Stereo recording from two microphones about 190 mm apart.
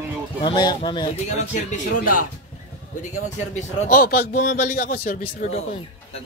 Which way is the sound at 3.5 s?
50° left (ahead or behind).